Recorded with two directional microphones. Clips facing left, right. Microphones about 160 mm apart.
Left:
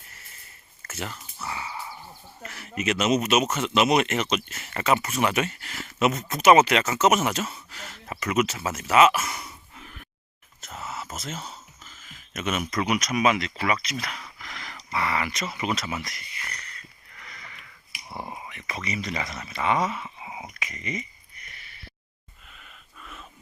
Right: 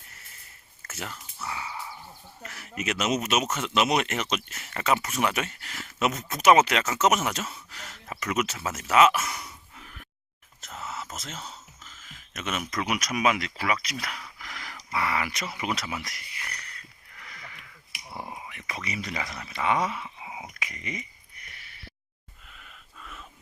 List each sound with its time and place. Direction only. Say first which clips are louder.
0.9 s speech: left 3 dB; centre (ahead or behind)
10.6 s a sound: left 1 dB; 5° left (ahead or behind)
13.8 s speech: left 2 dB; 10° right (ahead or behind)
14.3 s dog: left 1 dB; 10° right (ahead or behind)
14.8 s speech: left 1 dB; 5° right (ahead or behind)
17.2 s a sound: even; 10° right (ahead or behind)
18.1 s speech: left 2 dB; 20° left (ahead or behind)
18.5 s speech: left 3 dB; 5° right (ahead or behind)